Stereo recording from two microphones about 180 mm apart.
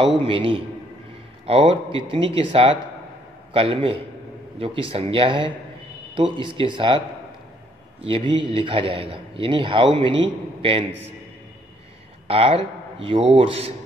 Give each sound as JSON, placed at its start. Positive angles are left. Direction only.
{"t": 0.0, "sound": "a man's voice", "side_deg": -30}
{"t": 8.0, "sound": "a man's voice", "side_deg": -30}
{"t": 12.3, "sound": "speech", "side_deg": -30}